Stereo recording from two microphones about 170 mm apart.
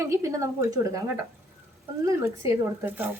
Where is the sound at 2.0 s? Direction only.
15° right (ahead or behind).